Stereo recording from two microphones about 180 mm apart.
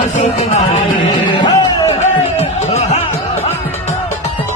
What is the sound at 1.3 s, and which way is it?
Music, 25° left (ahead or behind).